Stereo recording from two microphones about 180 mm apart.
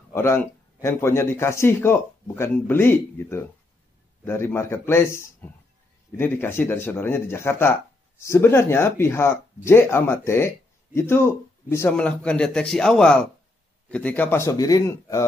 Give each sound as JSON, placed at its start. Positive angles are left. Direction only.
{"t": 0.1, "sound": "a man's voice", "side_deg": 15}